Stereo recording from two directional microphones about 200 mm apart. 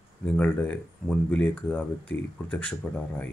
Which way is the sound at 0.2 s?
5° left (ahead or behind).